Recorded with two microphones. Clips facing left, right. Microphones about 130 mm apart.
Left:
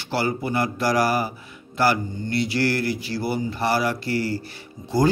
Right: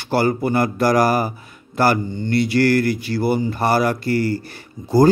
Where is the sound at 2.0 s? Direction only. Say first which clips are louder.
Right 5 dB; 75° right (ahead or behind).